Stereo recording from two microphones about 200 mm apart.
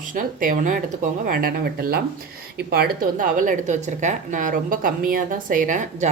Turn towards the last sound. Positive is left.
turn(degrees=-40)  # may be behind; listen again after turning